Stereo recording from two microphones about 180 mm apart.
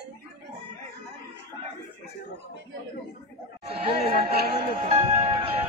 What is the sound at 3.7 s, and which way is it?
Speech, 30° right (ahead or behind).